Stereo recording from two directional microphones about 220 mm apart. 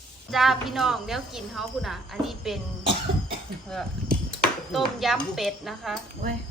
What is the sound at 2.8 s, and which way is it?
Cough, 25° right (ahead or behind).